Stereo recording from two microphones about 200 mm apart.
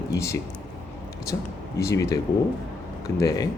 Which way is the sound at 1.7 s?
15° left (ahead or behind).